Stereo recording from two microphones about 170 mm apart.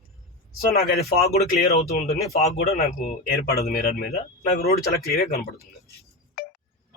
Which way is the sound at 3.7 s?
65° left (ahead or behind).